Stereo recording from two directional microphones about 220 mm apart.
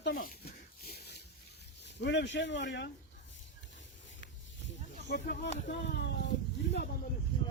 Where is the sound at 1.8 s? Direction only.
50° left (ahead or behind).